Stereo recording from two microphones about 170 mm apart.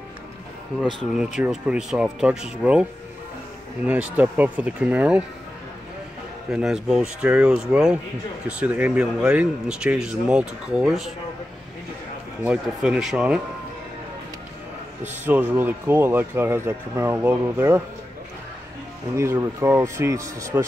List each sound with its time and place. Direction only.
1.1 s speech: 5° right (ahead or behind)
6.5 s speech: 5° right (ahead or behind)
12.4 s speech: 5° right (ahead or behind)
15.2 s speech: 10° right (ahead or behind)
19.1 s speech: 15° right (ahead or behind)